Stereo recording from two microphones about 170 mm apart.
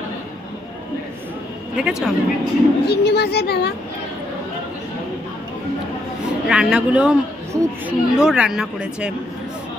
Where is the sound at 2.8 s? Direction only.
75° left (ahead or behind).